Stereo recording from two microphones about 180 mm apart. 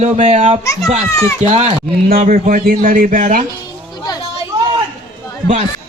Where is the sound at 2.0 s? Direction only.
50° right (ahead or behind).